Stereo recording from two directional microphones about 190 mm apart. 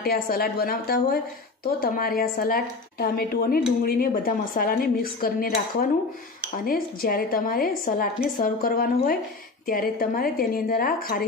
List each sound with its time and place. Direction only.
0.0 s a woman's voice: 55° left (ahead or behind)